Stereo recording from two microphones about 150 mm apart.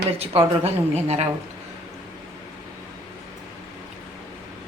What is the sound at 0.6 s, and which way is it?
Speech, 45° right (ahead or behind).